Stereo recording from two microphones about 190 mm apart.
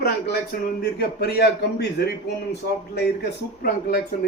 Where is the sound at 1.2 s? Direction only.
60° left (ahead or behind).